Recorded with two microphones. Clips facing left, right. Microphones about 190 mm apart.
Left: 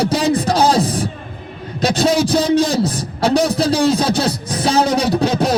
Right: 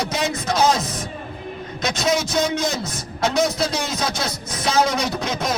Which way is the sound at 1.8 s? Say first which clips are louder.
Left 7 dB; 35° left (ahead or behind).